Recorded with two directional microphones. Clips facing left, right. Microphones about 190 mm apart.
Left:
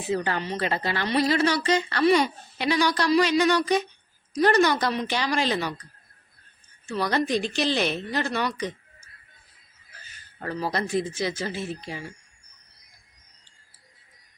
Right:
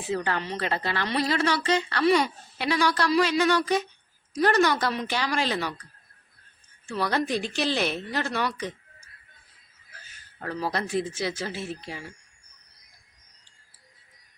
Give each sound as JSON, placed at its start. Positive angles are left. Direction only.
{"t": 0.1, "sound": "a woman's voice", "side_deg": 5}
{"t": 5.5, "sound": "speech", "side_deg": 15}
{"t": 7.1, "sound": "a woman's voice", "side_deg": -5}
{"t": 10.7, "sound": "a woman's voice", "side_deg": -5}